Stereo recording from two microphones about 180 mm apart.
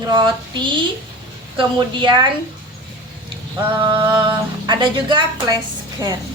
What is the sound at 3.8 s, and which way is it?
Speech, 30° right (ahead or behind).